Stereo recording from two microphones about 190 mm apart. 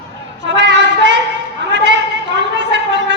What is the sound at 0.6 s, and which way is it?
Child singing, 65° right (ahead or behind).